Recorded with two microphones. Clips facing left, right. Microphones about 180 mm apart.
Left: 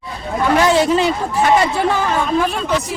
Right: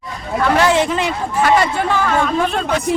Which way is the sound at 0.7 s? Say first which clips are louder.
Left 3 dB; 35° left (ahead or behind).